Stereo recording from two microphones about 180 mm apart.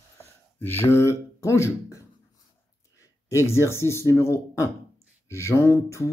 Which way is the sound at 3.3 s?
15° left (ahead or behind).